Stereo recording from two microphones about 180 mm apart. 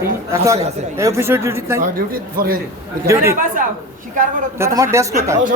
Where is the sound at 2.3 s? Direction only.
55° right (ahead or behind).